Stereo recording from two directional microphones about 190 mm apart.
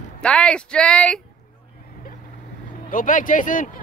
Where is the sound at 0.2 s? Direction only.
5° left (ahead or behind).